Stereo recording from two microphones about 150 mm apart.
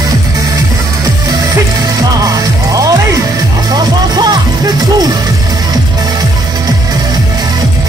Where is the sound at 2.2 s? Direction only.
25° right (ahead or behind).